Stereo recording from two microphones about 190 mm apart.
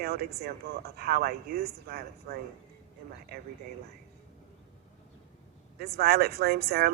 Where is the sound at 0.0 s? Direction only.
55° right (ahead or behind).